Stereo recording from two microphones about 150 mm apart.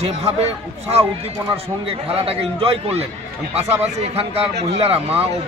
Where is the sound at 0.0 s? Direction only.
45° right (ahead or behind).